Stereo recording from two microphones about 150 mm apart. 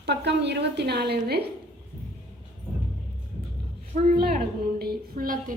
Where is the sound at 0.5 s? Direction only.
90° right.